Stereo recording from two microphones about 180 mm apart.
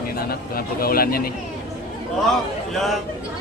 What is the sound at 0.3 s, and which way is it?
Speech, 55° left (ahead or behind).